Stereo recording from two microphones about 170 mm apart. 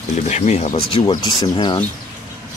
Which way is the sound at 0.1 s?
45° left (ahead or behind).